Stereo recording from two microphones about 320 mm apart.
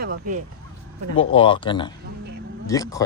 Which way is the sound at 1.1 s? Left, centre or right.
Centre.